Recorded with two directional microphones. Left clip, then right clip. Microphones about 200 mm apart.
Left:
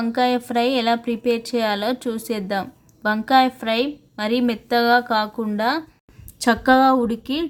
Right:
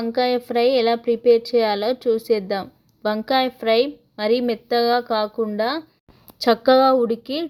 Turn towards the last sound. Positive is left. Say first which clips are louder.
# right 2 dB
turn(degrees=-15)  # may be behind; listen again after turning